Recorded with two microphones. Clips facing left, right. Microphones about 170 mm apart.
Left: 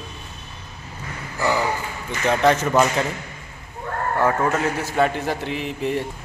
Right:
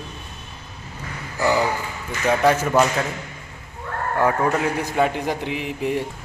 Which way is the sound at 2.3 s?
10° right (ahead or behind).